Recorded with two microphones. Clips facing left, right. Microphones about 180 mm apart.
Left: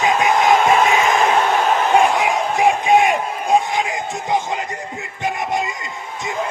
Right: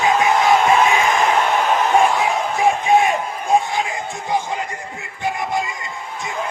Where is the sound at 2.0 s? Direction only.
20° left (ahead or behind).